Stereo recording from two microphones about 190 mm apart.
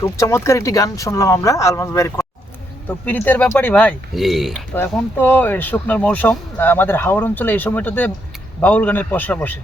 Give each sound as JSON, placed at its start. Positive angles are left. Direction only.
{"t": 0.0, "sound": "speech", "side_deg": 15}
{"t": 4.7, "sound": "speech", "side_deg": 10}